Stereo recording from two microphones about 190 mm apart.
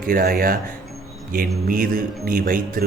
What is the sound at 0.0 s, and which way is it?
A man's voice, 50° right (ahead or behind).